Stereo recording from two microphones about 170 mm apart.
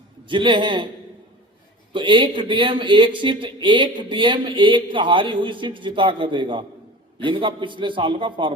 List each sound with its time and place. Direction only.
0.3 s a man's voice: 30° right (ahead or behind)
1.9 s a man's voice: 30° right (ahead or behind)